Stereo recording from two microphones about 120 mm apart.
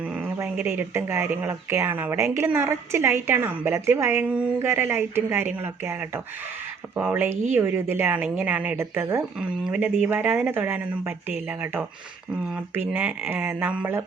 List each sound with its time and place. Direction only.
0.3 s speech: 15° right (ahead or behind)
6.9 s speech: 15° right (ahead or behind)
9.4 s speech: 10° right (ahead or behind)